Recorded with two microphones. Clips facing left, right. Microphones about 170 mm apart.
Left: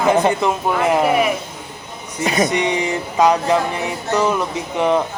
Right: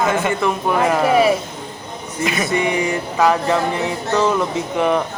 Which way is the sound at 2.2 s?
35° left (ahead or behind).